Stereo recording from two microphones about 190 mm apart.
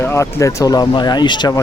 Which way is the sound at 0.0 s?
15° left (ahead or behind).